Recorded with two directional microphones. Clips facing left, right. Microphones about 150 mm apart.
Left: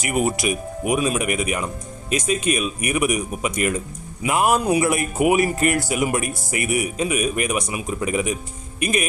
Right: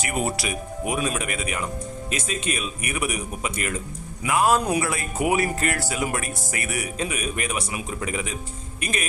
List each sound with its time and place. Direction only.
0.2 s speech: 15° left (ahead or behind)